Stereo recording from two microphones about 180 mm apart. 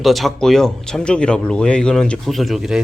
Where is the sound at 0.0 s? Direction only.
Centre (ahead or behind).